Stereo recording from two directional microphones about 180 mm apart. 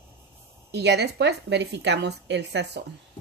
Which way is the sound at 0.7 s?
70° right (ahead or behind).